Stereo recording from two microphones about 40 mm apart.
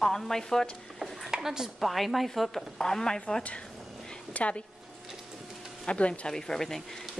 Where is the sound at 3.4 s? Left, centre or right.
Left.